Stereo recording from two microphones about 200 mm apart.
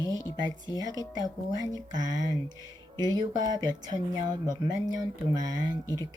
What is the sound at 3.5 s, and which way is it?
Speech, 20° right (ahead or behind).